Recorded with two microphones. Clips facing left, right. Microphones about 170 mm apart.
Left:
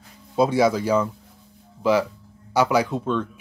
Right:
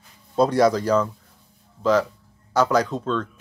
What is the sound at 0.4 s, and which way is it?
Speech, 5° left (ahead or behind).